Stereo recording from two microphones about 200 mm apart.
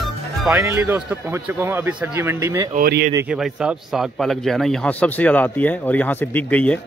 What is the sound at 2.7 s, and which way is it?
Speech, 45° right (ahead or behind).